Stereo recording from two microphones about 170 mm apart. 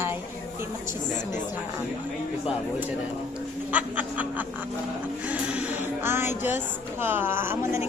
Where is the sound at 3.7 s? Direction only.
10° right (ahead or behind).